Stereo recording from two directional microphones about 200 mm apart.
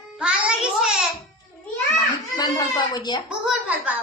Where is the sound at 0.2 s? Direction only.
5° right (ahead or behind).